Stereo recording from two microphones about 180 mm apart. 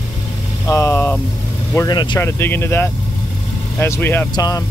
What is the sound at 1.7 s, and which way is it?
Speech, 20° left (ahead or behind).